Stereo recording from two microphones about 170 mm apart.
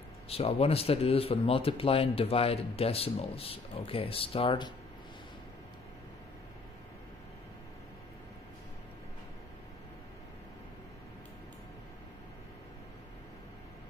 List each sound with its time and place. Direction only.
0.3 s speech: 35° left (ahead or behind)